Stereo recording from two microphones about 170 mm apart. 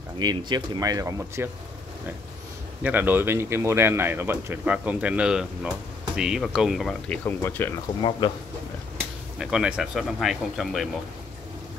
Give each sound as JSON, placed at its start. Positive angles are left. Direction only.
{"t": 0.2, "sound": "speech", "side_deg": -25}
{"t": 2.8, "sound": "speech", "side_deg": -10}
{"t": 7.2, "sound": "speech", "side_deg": 15}
{"t": 9.4, "sound": "speech", "side_deg": -5}